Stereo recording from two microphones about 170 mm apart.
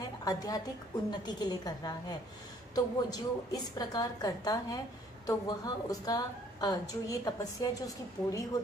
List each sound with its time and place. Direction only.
0.2 s a woman's voice: 20° left (ahead or behind)